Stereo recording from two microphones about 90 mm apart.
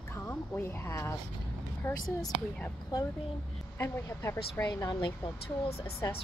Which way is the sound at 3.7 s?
30° left (ahead or behind).